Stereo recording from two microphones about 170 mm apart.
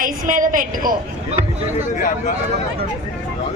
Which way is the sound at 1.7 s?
45° left (ahead or behind).